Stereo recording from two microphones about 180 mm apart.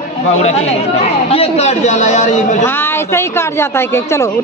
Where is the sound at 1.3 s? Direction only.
35° left (ahead or behind).